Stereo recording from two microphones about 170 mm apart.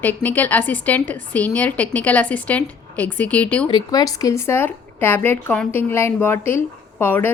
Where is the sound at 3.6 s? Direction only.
25° left (ahead or behind).